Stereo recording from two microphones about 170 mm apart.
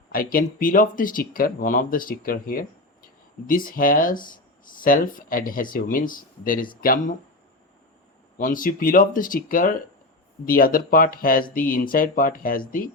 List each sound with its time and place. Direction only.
0.1 s speech: 55° left (ahead or behind)
8.4 s speech: 50° left (ahead or behind)